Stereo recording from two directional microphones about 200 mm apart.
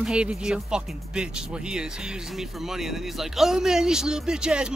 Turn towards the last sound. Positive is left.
turn(degrees=-5)  # may be behind; listen again after turning